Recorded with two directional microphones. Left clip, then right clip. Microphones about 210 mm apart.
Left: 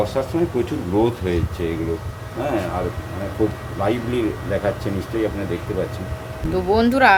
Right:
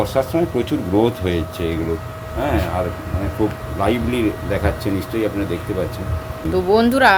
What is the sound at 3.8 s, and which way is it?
Speech, 45° right (ahead or behind).